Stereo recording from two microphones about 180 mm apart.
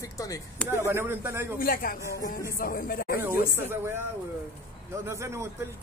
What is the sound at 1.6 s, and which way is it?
A woman's voice, 50° left (ahead or behind).